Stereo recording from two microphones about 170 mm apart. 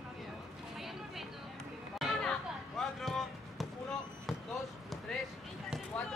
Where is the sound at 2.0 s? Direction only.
5° left (ahead or behind).